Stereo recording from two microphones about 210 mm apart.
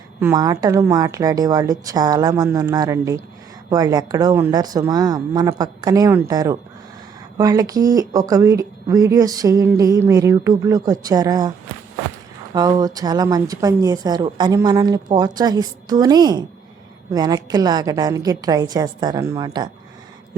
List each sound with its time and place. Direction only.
0.2 s speech: 15° right (ahead or behind)
12.5 s a woman's voice: 20° right (ahead or behind)